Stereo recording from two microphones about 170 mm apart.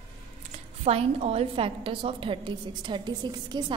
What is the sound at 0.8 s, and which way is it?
A woman's voice, 35° right (ahead or behind).